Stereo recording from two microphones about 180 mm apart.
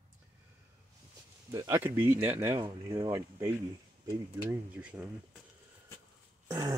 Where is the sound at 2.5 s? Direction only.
25° right (ahead or behind); by 5.0 s 5° right (ahead or behind).